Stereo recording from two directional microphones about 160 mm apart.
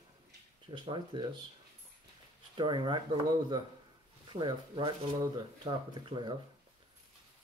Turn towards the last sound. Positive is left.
turn(degrees=-30)  # may be behind; listen again after turning